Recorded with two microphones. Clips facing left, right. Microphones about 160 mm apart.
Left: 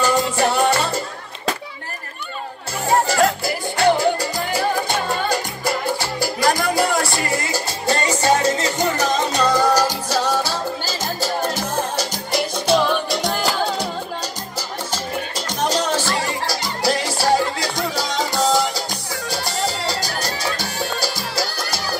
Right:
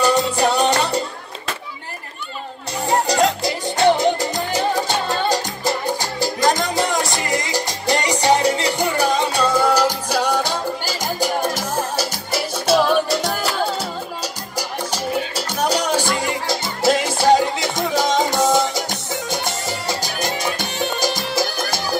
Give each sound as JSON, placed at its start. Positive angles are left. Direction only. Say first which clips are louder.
{"t": 0.4, "sound": "music", "louder": "right 1 dB", "side_deg": -20}
{"t": 2.9, "sound": "music", "louder": "even", "side_deg": -20}
{"t": 14.9, "sound": "music", "louder": "right 4 dB", "side_deg": -10}
{"t": 20.0, "sound": "music", "louder": "right 1 dB", "side_deg": -20}